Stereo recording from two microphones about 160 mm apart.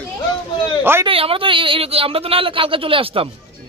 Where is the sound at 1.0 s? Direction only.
35° right (ahead or behind).